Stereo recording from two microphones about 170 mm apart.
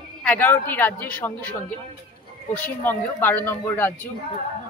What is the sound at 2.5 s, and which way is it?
A woman's voice, 10° left (ahead or behind).